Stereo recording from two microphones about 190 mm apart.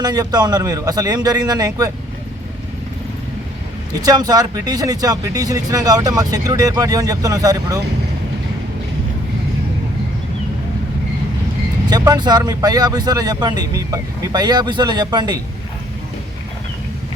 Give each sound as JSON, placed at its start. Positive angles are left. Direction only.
{"t": 0.0, "sound": "speech", "side_deg": -20}
{"t": 4.0, "sound": "speech", "side_deg": -20}
{"t": 11.9, "sound": "speech", "side_deg": -20}